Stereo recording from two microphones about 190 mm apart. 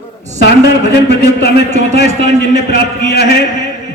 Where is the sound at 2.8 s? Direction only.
60° left (ahead or behind).